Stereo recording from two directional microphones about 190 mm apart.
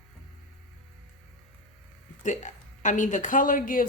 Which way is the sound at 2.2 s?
40° left (ahead or behind).